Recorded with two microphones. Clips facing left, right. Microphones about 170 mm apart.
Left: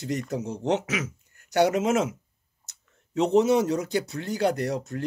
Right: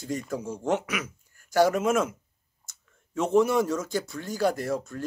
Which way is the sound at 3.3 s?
20° left (ahead or behind).